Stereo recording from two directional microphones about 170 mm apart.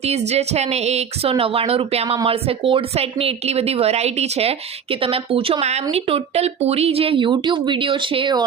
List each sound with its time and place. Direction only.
0.0 s a woman's voice: 40° right (ahead or behind)